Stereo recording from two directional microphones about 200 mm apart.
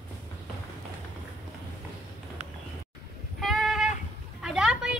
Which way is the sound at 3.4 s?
Centre (ahead or behind).